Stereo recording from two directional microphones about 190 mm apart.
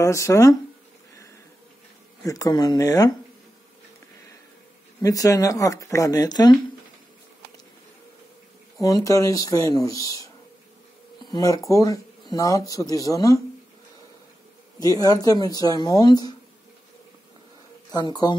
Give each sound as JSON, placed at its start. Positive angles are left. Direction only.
{"t": 0.0, "sound": "speech", "side_deg": 15}
{"t": 2.2, "sound": "speech", "side_deg": 20}
{"t": 5.0, "sound": "speech", "side_deg": 15}
{"t": 8.8, "sound": "speech", "side_deg": 15}
{"t": 14.8, "sound": "speech", "side_deg": 20}
{"t": 17.9, "sound": "speech", "side_deg": 20}